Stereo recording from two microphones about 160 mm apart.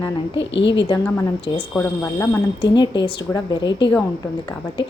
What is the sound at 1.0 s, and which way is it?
Speech, 10° left (ahead or behind).